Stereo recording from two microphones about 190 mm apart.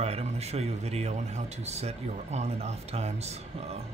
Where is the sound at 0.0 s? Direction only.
35° right (ahead or behind).